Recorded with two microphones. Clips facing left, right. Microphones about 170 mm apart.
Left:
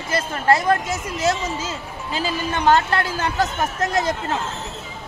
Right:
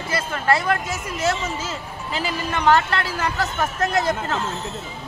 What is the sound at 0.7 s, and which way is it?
A woman's voice, 20° left (ahead or behind).